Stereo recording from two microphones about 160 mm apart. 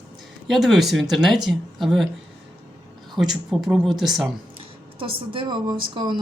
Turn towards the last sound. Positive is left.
turn(degrees=-25)  # may be behind; listen again after turning